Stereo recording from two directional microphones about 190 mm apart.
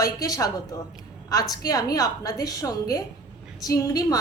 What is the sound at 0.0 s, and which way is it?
A woman's voice, 20° left (ahead or behind).